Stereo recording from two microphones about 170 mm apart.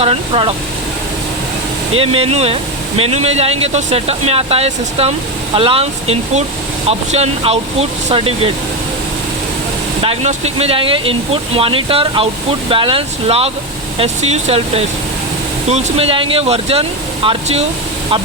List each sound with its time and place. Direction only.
0.0 s speech: 35° right (ahead or behind)
2.0 s speech: 35° right (ahead or behind)
10.0 s speech: 35° right (ahead or behind)